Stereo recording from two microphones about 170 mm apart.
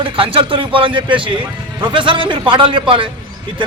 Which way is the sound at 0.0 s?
30° right (ahead or behind).